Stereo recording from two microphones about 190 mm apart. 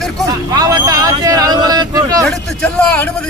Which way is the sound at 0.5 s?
20° right (ahead or behind).